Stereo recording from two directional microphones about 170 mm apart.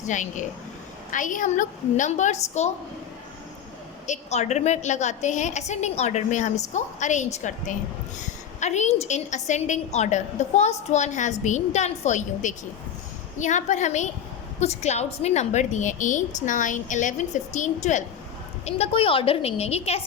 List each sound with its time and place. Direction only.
0.1 s a woman's voice: 45° left (ahead or behind)
4.0 s a woman's voice: 45° left (ahead or behind)